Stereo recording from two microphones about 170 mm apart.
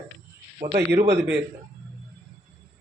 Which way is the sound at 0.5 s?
40° right (ahead or behind).